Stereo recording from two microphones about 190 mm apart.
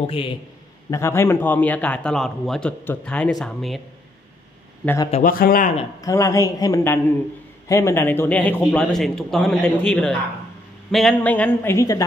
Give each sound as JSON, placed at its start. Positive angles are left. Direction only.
{"t": 0.0, "sound": "a man's voice", "side_deg": 30}
{"t": 0.8, "sound": "a man's voice", "side_deg": 15}
{"t": 4.8, "sound": "a man's voice", "side_deg": 20}
{"t": 5.1, "sound": "a man's voice", "side_deg": 45}
{"t": 5.9, "sound": "a man's voice", "side_deg": 15}